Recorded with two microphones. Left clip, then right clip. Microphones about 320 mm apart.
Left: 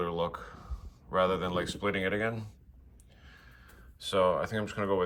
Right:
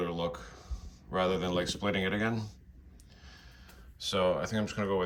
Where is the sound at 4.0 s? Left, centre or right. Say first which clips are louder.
Left 2 dB; centre.